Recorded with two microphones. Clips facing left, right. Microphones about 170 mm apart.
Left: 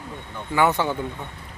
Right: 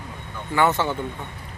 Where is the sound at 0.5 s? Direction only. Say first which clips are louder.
Even; 15° left (ahead or behind).